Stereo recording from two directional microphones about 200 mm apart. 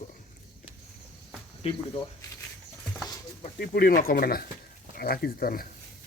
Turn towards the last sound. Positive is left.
turn(degrees=45)  # may be behind; listen again after turning